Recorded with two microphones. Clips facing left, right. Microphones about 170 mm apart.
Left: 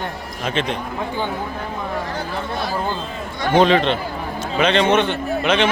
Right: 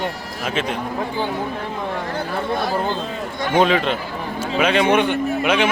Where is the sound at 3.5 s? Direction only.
5° right (ahead or behind).